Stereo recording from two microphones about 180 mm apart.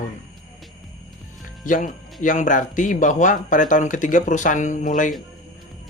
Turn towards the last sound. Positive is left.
turn(degrees=45)  # may be behind; listen again after turning